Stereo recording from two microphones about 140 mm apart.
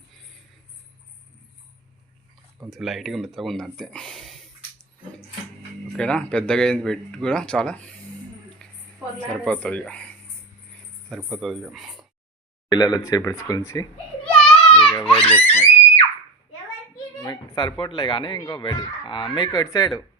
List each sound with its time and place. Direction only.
2.6 s speech: centre (ahead or behind)
6.0 s speech: 5° left (ahead or behind)
9.1 s speech: 10° left (ahead or behind)
11.3 s speech: centre (ahead or behind)
12.7 s speech: 30° left (ahead or behind)
14.3 s a sound: 5° left (ahead or behind)
15.0 s screaming: 5° left (ahead or behind)
17.2 s speech: 30° left (ahead or behind)